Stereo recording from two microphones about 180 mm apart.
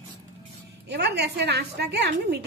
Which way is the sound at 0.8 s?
70° right (ahead or behind).